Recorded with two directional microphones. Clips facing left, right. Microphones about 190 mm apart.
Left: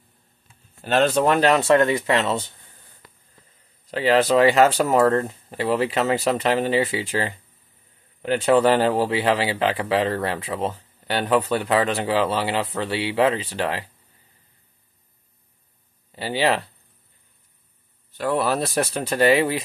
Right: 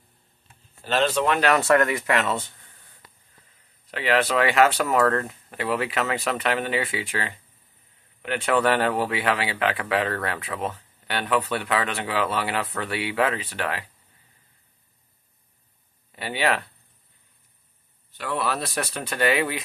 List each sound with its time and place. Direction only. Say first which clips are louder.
0.8 s speech: left 4 dB; 50° left (ahead or behind)
1.5 s speech: left 3 dB; 25° left (ahead or behind)
3.9 s speech: left 5 dB; 35° left (ahead or behind)
16.2 s speech: left 3 dB; 30° left (ahead or behind)
18.1 s speech: left 5 dB; 40° left (ahead or behind)